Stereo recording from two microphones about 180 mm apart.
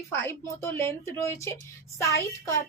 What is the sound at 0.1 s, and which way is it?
Speech, 10° left (ahead or behind).